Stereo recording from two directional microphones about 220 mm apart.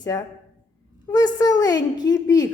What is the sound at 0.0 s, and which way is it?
A woman's voice, 15° left (ahead or behind).